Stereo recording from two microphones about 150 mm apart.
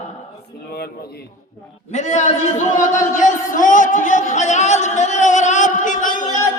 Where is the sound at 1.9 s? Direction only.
50° left (ahead or behind).